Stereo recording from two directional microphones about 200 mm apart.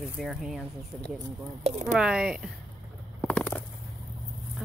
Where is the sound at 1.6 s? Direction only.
35° right (ahead or behind).